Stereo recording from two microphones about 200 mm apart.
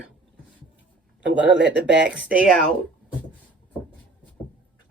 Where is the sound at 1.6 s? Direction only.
60° right (ahead or behind).